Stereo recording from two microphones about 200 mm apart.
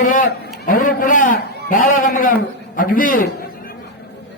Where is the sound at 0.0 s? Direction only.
40° left (ahead or behind).